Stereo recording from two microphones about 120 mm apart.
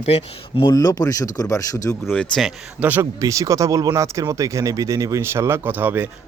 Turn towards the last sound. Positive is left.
turn(degrees=-15)  # may be behind; listen again after turning